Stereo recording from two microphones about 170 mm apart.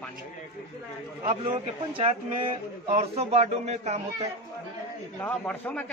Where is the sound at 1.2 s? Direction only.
30° right (ahead or behind).